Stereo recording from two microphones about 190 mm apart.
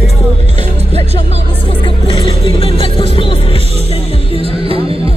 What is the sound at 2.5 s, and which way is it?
Music, 30° left (ahead or behind).